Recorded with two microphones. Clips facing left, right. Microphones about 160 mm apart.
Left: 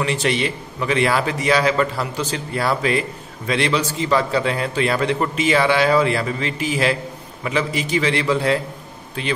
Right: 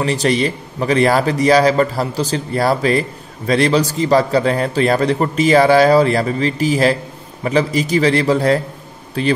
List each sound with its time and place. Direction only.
0.0 s a man's voice: 35° right (ahead or behind)